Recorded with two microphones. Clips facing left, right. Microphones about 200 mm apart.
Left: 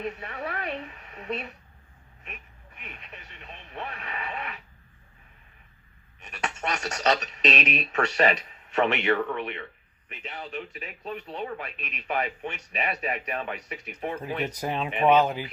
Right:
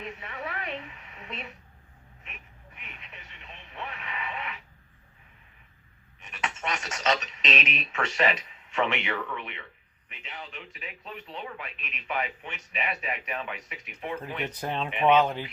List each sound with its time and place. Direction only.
0.0 s speech: 40° left (ahead or behind)
2.2 s radio: 40° left (ahead or behind)
6.2 s speech: 40° left (ahead or behind)
14.5 s speech: 10° left (ahead or behind)